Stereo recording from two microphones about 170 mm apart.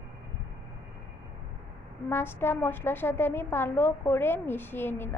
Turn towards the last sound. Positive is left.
turn(degrees=15)  # may be behind; listen again after turning